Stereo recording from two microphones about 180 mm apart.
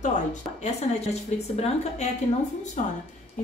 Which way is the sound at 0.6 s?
35° left (ahead or behind).